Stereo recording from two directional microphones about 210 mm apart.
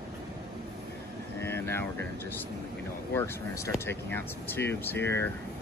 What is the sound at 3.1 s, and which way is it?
Speech, 15° left (ahead or behind).